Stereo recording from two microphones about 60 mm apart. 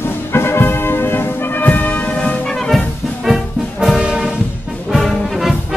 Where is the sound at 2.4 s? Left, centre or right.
Centre.